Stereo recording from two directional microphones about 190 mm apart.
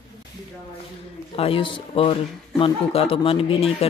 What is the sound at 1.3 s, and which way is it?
Speech, 30° left (ahead or behind).